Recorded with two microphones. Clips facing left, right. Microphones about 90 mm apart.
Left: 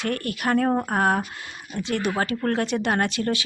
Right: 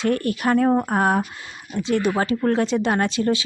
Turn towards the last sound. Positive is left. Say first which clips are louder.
# right 3 dB
turn(degrees=-25)  # may be behind; listen again after turning